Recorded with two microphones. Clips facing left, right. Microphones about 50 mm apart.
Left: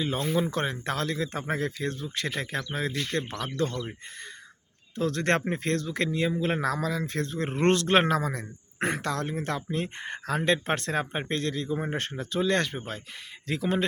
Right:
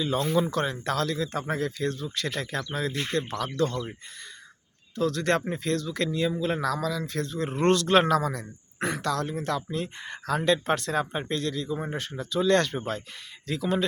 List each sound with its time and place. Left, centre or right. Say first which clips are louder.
0.3 s speech: right 2 dB; left
2.9 s speech: right 1 dB; right
3.2 s speech: right 4 dB; left
4.9 s a man's voice: right 1 dB; left
12.4 s speech: right 3 dB; centre
13.5 s a man's voice: even; left